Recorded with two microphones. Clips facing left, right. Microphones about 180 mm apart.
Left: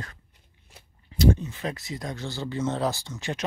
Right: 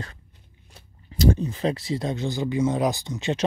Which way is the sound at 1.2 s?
35° right (ahead or behind).